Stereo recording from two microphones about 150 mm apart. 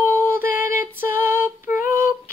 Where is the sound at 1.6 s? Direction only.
65° left (ahead or behind).